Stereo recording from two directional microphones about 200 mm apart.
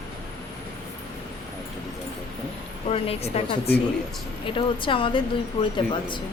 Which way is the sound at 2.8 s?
30° left (ahead or behind).